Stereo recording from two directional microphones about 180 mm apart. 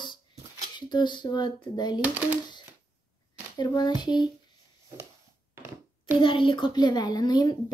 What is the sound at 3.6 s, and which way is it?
Speech, 25° left (ahead or behind).